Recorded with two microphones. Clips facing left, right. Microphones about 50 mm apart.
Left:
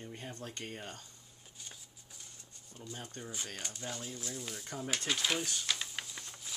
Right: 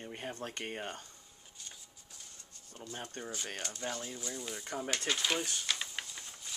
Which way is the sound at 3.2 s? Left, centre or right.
Right.